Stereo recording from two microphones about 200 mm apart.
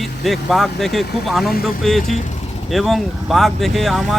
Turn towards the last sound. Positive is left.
turn(degrees=0)  # may be behind; listen again after turning